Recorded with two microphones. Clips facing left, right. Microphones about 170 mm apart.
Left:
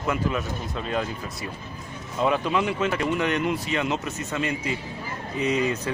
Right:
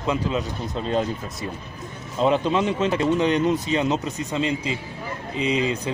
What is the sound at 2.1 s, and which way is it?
Speech, 25° right (ahead or behind).